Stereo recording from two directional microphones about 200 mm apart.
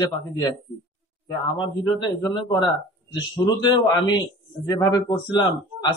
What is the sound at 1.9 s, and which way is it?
Speech, 20° left (ahead or behind).